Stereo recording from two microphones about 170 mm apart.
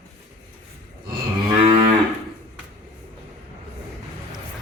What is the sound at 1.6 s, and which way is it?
Cattle, 30° right (ahead or behind).